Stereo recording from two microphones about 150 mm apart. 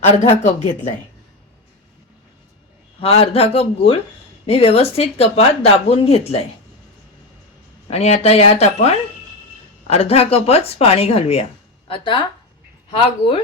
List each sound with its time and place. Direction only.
0.0 s speech: 50° left (ahead or behind)
3.0 s speech: 40° left (ahead or behind)
7.9 s speech: 45° left (ahead or behind)